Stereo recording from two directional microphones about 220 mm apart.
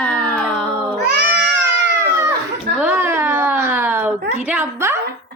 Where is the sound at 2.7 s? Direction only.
5° right (ahead or behind).